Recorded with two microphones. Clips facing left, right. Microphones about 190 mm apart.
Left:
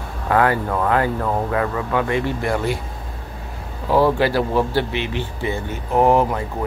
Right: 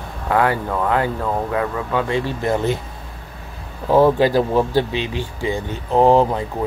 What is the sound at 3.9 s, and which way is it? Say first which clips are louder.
Speech: right 3 dB; 20° right (ahead or behind).